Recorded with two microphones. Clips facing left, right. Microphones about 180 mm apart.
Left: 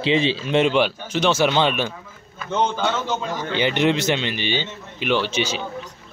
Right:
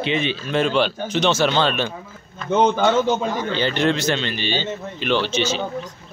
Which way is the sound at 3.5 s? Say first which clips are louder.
Left 2 dB; 15° left (ahead or behind).